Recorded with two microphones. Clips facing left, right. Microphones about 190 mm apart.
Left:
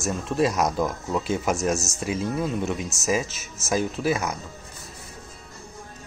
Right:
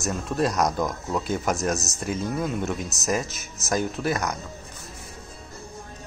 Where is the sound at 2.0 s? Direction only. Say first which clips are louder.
Even; centre (ahead or behind).